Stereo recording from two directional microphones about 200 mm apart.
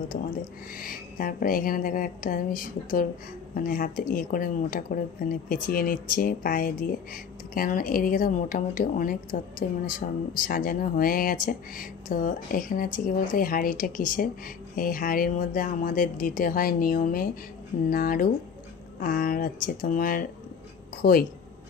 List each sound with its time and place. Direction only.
0.7 s a woman's voice: 45° left (ahead or behind)